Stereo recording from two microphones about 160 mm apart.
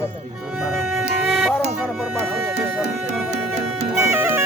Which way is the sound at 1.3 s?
Centre (ahead or behind).